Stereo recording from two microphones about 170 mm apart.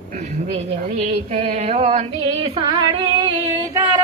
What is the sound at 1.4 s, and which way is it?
Music, 40° right (ahead or behind).